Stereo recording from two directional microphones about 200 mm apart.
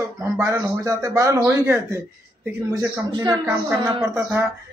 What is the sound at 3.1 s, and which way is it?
Speech, 20° right (ahead or behind).